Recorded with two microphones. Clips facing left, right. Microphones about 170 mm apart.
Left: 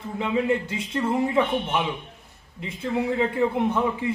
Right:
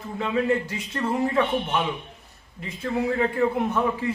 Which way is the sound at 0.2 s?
15° left (ahead or behind).